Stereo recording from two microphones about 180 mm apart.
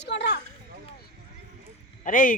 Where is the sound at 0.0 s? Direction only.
70° left (ahead or behind).